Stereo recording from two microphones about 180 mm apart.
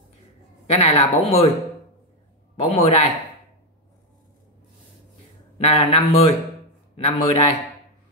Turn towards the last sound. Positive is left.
turn(degrees=30)  # may be behind; listen again after turning